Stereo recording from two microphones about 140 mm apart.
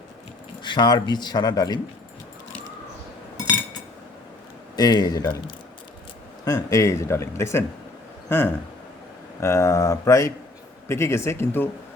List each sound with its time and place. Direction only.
0.6 s speech: 30° left (ahead or behind)
4.8 s speech: 25° left (ahead or behind)
6.4 s speech: 25° left (ahead or behind)